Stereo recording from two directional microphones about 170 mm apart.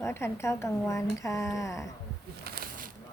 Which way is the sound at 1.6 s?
20° left (ahead or behind).